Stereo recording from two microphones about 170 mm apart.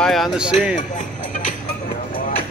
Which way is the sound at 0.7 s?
45° left (ahead or behind).